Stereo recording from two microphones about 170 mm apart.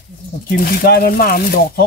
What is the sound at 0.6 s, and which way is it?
Speech, 65° left (ahead or behind).